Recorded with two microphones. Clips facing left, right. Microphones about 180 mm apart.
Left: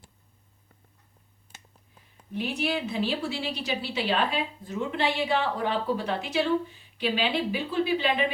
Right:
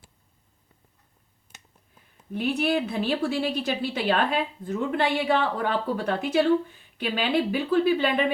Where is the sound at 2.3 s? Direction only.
55° right (ahead or behind).